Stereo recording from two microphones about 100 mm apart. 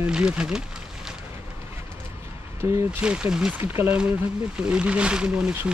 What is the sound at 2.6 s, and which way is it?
Speech, 30° right (ahead or behind).